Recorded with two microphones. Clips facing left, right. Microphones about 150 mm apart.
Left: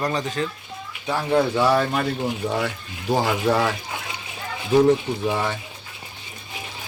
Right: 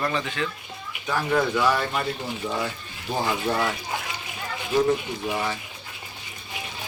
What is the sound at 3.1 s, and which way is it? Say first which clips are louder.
Speech: left 5 dB; 90° left.